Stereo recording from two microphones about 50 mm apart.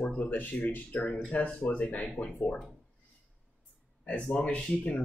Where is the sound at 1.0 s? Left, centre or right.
Centre.